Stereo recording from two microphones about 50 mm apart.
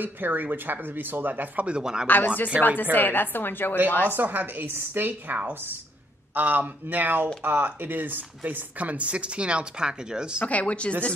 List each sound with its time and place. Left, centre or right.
0.0 s speech: right
1.7 s speech: centre
2.0 s a woman's voice: left
4.1 s a woman's voice: right; by 10.4 s centre
10.4 s speech: left